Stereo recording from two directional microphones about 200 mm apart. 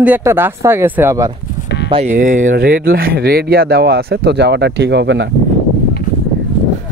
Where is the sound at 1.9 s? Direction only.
35° right (ahead or behind); by 5.2 s 60° right (ahead or behind).